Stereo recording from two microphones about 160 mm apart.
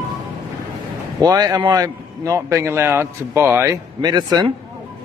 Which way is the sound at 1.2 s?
20° right (ahead or behind).